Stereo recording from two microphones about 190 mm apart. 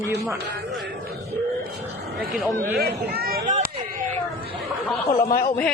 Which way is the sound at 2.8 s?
55° right (ahead or behind).